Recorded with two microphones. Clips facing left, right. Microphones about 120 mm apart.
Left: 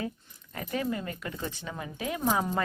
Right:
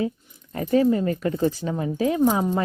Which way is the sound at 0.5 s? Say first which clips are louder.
Right 12 dB; 30° right (ahead or behind).